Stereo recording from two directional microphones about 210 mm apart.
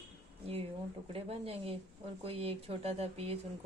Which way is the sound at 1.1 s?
30° right (ahead or behind).